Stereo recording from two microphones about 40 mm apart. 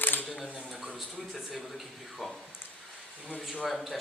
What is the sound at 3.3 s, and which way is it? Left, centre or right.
Speech, left.